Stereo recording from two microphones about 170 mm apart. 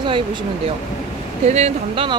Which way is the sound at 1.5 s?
40° right (ahead or behind).